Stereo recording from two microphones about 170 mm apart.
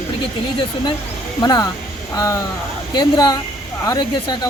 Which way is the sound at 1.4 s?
25° left (ahead or behind).